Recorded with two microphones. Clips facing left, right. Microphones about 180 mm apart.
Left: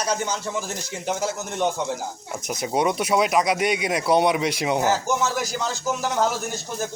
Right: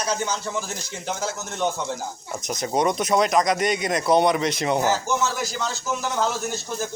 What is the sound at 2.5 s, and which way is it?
Speech, 5° left (ahead or behind).